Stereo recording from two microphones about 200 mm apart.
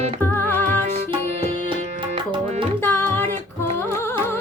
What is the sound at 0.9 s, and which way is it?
Tabla, 30° right (ahead or behind).